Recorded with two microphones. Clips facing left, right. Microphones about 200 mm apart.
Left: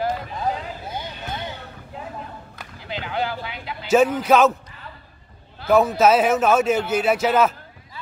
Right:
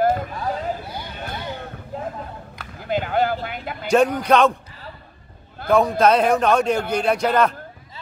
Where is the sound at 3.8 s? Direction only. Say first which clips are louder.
Even; 5° left (ahead or behind).